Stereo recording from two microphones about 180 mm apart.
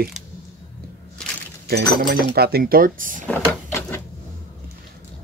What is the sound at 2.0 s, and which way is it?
Speech, 55° right (ahead or behind).